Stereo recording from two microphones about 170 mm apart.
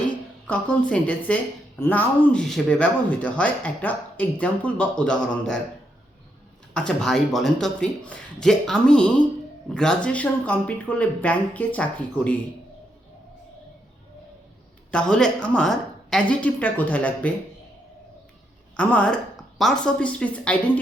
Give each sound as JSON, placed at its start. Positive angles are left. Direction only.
{"t": 0.4, "sound": "speech", "side_deg": 10}
{"t": 6.7, "sound": "speech", "side_deg": 5}
{"t": 14.8, "sound": "speech", "side_deg": 5}
{"t": 18.8, "sound": "speech", "side_deg": 5}